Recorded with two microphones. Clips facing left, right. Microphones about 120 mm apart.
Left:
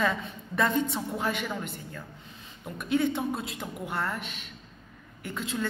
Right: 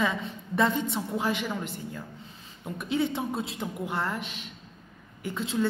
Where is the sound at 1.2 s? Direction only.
25° right (ahead or behind).